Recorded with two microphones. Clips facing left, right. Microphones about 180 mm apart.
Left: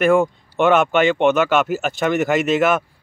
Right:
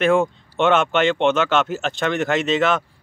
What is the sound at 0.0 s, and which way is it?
Speech, centre (ahead or behind).